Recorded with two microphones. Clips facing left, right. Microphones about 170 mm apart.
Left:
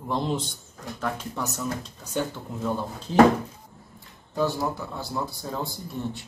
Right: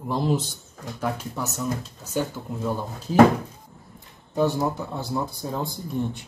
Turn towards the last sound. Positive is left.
turn(degrees=-20)  # may be behind; listen again after turning